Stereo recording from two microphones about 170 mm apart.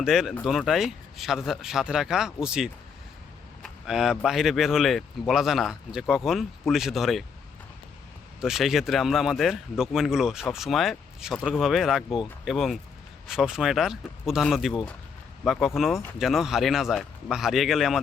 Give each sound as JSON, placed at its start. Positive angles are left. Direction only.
{"t": 0.0, "sound": "speech", "side_deg": 0}
{"t": 8.4, "sound": "speech", "side_deg": -5}